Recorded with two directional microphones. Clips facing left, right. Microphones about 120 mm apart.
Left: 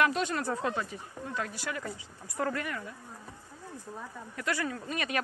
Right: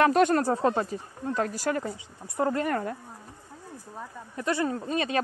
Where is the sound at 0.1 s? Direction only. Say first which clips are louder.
Right 10 dB; 50° right (ahead or behind).